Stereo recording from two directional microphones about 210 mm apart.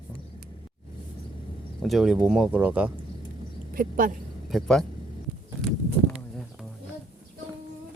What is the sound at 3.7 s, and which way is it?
Speech, 40° right (ahead or behind).